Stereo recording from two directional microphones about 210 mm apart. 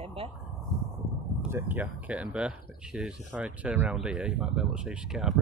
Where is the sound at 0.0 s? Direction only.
25° right (ahead or behind).